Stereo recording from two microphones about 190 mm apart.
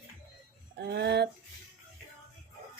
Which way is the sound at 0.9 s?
60° right (ahead or behind).